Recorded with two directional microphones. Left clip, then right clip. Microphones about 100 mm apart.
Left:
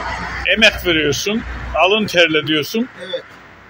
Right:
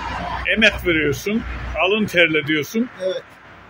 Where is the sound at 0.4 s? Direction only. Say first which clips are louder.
Left 4 dB; 15° right (ahead or behind).